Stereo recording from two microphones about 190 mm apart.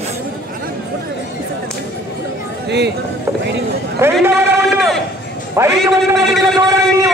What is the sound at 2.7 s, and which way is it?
Speech, 60° right (ahead or behind).